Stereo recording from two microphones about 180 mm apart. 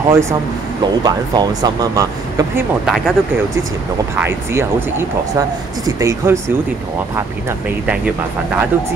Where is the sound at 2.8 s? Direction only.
Centre (ahead or behind).